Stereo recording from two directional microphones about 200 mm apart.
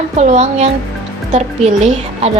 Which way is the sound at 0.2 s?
35° right (ahead or behind).